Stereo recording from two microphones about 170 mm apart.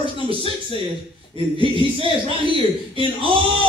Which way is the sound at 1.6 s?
30° right (ahead or behind).